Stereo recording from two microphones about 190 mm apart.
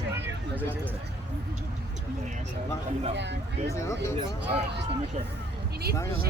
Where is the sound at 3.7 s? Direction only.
15° left (ahead or behind).